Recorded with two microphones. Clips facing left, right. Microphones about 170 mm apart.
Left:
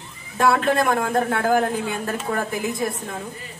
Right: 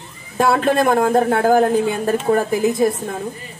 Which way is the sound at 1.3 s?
45° right (ahead or behind).